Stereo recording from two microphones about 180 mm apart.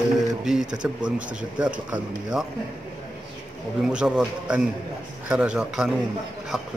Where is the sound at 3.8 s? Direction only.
5° right (ahead or behind).